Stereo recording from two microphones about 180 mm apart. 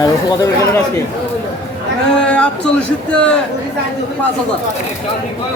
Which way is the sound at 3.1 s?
5° left (ahead or behind).